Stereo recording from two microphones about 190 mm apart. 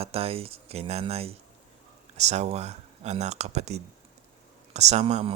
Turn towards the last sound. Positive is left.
turn(degrees=-35)  # may be behind; listen again after turning